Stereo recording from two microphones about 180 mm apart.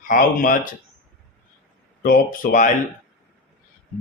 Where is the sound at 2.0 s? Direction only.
50° left (ahead or behind).